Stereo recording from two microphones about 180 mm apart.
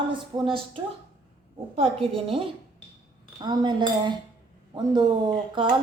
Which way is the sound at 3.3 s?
25° right (ahead or behind).